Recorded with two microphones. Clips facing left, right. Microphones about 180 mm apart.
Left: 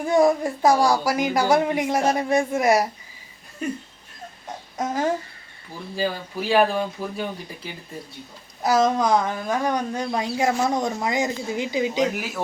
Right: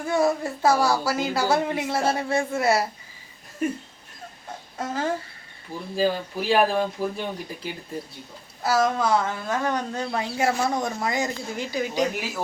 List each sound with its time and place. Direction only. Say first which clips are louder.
0.0 s a woman's voice: left 4 dB; 15° left (ahead or behind)
4.8 s a woman's voice: left 3 dB; 15° left (ahead or behind)
6.0 s speech: right 2 dB; centre (ahead or behind)
8.6 s a woman's voice: left 3 dB; 20° left (ahead or behind)
12.1 s speech: left 1 dB; centre (ahead or behind)